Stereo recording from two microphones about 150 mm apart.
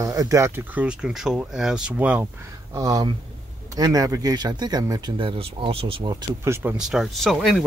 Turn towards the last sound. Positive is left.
turn(degrees=0)  # may be behind; listen again after turning